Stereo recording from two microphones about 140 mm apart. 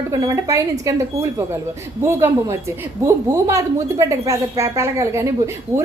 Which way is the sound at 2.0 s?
20° right (ahead or behind).